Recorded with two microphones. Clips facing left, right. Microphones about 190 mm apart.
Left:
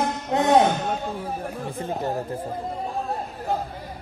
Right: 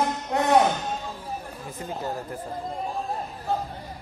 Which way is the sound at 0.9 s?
65° left (ahead or behind).